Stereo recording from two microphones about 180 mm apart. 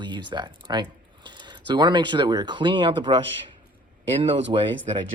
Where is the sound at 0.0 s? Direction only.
25° right (ahead or behind).